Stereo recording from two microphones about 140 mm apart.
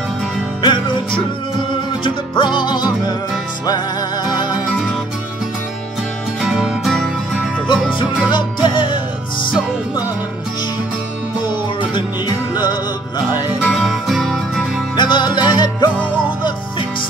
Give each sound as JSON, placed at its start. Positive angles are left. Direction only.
{"t": 0.6, "sound": "music", "side_deg": 35}
{"t": 6.4, "sound": "music", "side_deg": -5}
{"t": 8.3, "sound": "music", "side_deg": 35}
{"t": 13.7, "sound": "music", "side_deg": 0}
{"t": 15.0, "sound": "music", "side_deg": 35}